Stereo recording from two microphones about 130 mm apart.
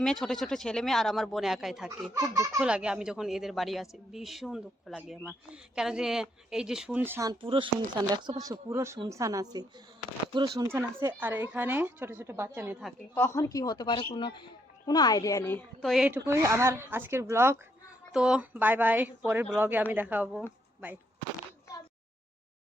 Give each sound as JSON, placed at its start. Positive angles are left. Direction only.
{"t": 0.0, "sound": "a woman's voice", "side_deg": 5}
{"t": 2.1, "sound": "speech", "side_deg": -25}
{"t": 2.6, "sound": "a woman's voice", "side_deg": -5}
{"t": 7.4, "sound": "a woman's voice", "side_deg": -40}
{"t": 13.1, "sound": "speech", "side_deg": 20}
{"t": 15.8, "sound": "a woman's voice", "side_deg": 0}
{"t": 16.0, "sound": "speech", "side_deg": -15}
{"t": 18.1, "sound": "a woman's voice", "side_deg": -5}